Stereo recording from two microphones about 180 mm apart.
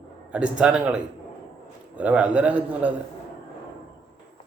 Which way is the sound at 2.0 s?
5° right (ahead or behind).